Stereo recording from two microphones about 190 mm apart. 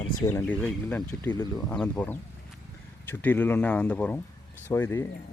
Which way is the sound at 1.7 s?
5° left (ahead or behind).